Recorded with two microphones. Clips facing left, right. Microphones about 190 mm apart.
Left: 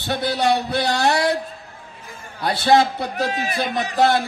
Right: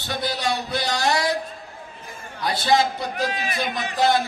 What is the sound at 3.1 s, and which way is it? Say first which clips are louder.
Speech: left 5 dB; 40° left (ahead or behind).